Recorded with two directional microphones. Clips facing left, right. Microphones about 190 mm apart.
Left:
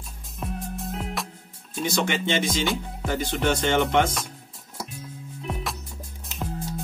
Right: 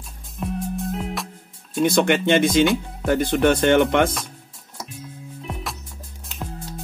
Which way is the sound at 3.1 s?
55° right (ahead or behind).